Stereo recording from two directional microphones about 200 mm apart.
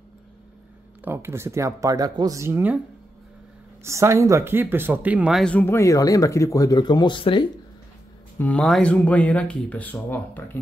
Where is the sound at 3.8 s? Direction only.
15° right (ahead or behind); by 7.4 s 25° left (ahead or behind).